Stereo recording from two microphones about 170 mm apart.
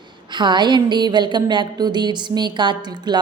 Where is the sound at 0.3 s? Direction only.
25° right (ahead or behind).